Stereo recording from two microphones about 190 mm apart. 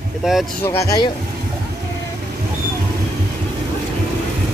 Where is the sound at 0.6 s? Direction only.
15° left (ahead or behind).